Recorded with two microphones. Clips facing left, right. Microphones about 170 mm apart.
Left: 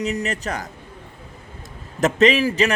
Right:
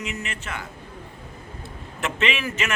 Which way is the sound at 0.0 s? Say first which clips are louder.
Left 9 dB; 40° left (ahead or behind).